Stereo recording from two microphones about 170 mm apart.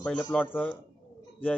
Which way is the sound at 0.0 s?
5° left (ahead or behind).